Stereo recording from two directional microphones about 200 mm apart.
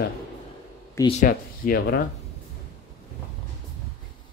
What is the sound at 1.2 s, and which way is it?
Speech, 45° left (ahead or behind).